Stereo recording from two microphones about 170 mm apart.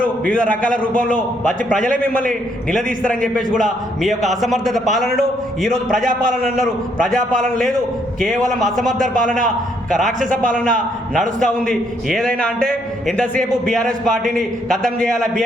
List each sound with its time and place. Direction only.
0.5 s a man's voice: 55° right (ahead or behind)
2.7 s a man's voice: 5° left (ahead or behind)
7.3 s a man's voice: centre (ahead or behind)
10.1 s a man's voice: 45° right (ahead or behind)
11.3 s a man's voice: 5° left (ahead or behind)